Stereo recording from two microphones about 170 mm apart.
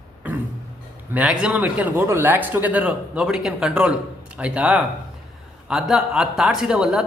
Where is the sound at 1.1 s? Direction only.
5° right (ahead or behind).